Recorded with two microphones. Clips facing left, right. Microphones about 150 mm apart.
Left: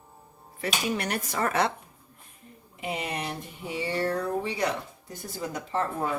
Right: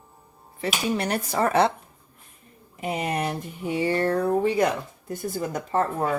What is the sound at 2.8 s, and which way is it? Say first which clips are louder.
Speech: right 6 dB; 45° right (ahead or behind).